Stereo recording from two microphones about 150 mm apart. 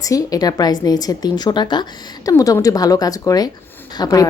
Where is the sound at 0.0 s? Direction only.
25° left (ahead or behind).